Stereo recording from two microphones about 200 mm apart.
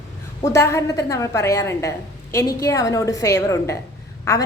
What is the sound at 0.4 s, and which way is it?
A woman's voice, 15° left (ahead or behind).